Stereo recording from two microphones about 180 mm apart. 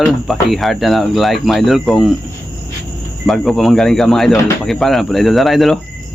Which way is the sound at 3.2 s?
Centre (ahead or behind).